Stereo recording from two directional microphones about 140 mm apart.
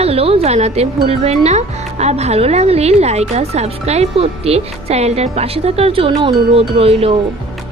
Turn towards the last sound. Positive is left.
turn(degrees=-45)  # may be behind; listen again after turning